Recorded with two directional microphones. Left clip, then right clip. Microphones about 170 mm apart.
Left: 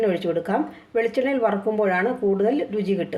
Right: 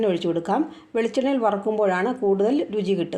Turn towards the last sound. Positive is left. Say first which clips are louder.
# right 1 dB
turn(degrees=-30)  # may be behind; listen again after turning